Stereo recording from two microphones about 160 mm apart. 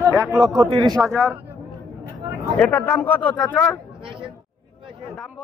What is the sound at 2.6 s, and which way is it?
Speech, 10° left (ahead or behind).